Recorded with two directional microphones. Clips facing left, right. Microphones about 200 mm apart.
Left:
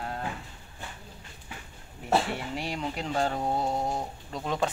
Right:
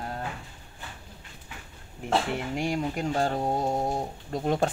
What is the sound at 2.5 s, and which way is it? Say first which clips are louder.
Speech: right 5 dB; 50° right (ahead or behind).